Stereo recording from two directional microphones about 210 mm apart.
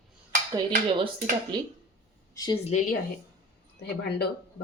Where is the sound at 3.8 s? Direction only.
50° left (ahead or behind).